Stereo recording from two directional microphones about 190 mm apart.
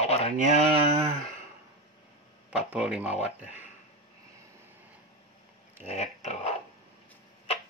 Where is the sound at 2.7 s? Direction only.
5° right (ahead or behind).